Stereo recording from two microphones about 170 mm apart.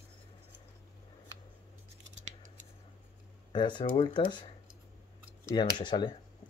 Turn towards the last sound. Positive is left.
turn(degrees=25)  # may be behind; listen again after turning